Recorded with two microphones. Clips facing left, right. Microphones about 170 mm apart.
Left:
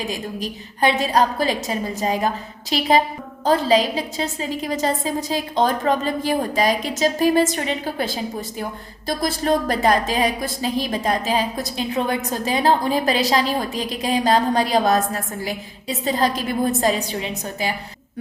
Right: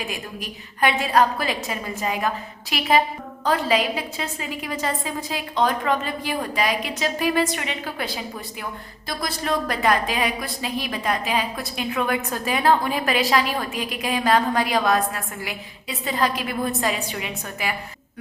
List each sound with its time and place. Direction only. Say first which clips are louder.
0.1 s a woman's voice: left 5 dB; 35° left (ahead or behind)